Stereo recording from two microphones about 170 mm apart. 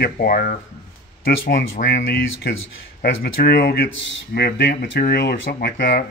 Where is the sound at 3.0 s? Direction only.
65° left (ahead or behind).